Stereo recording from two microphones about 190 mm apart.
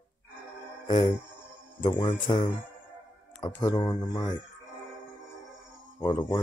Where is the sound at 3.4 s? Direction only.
20° left (ahead or behind).